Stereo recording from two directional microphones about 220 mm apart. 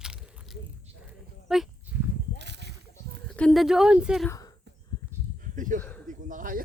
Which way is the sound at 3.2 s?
5° left (ahead or behind).